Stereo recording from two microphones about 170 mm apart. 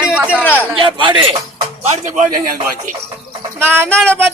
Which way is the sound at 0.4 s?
10° left (ahead or behind).